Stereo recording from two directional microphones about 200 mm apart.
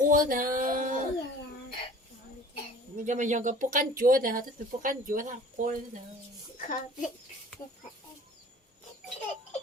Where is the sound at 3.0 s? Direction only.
40° right (ahead or behind).